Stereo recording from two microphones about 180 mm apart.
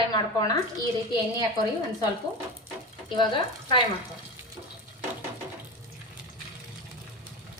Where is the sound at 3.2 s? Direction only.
25° left (ahead or behind).